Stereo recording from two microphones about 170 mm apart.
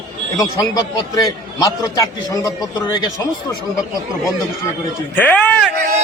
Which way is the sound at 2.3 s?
20° left (ahead or behind).